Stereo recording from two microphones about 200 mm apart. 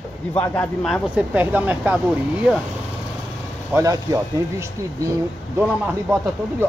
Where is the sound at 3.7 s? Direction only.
15° right (ahead or behind).